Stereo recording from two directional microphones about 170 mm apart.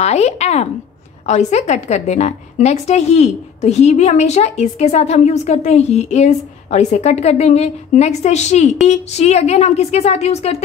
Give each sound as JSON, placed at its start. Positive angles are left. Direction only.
{"t": 0.0, "sound": "a woman's voice", "side_deg": 40}